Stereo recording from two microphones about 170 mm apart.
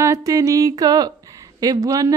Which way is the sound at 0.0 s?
20° right (ahead or behind).